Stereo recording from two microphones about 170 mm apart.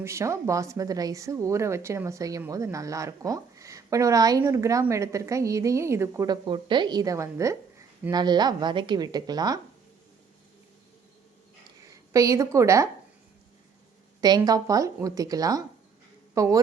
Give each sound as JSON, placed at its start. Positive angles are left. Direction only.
{"t": 0.0, "sound": "a woman's voice", "side_deg": -15}
{"t": 11.9, "sound": "a woman's voice", "side_deg": -20}
{"t": 14.2, "sound": "a woman's voice", "side_deg": -25}